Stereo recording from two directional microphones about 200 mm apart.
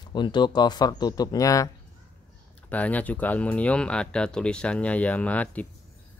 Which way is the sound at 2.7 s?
5° left (ahead or behind).